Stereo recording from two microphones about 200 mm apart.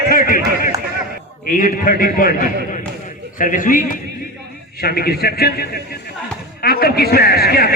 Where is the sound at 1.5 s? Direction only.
45° left (ahead or behind).